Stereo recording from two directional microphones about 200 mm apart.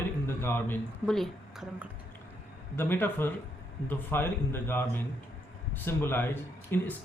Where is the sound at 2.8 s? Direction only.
10° left (ahead or behind).